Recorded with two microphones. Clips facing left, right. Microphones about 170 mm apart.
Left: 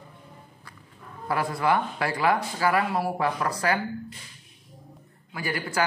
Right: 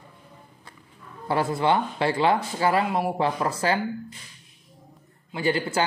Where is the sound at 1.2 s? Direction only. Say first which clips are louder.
Right 2 dB; 25° right (ahead or behind).